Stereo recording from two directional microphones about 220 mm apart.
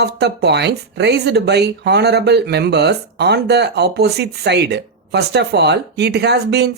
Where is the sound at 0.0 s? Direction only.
50° right (ahead or behind).